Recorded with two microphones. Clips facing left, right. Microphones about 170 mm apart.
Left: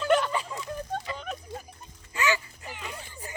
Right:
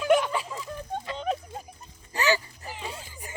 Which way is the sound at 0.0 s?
10° right (ahead or behind).